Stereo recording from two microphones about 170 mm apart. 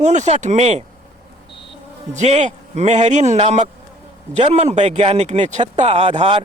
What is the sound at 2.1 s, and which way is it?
Speech, 40° right (ahead or behind).